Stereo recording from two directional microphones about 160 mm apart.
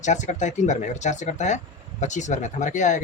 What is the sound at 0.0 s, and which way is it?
Speech, 50° left (ahead or behind).